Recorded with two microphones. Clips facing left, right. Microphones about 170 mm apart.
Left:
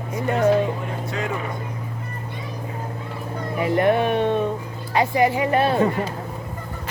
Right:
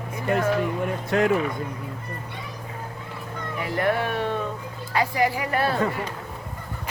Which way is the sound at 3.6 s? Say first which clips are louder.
Left 6 dB; 20° left (ahead or behind).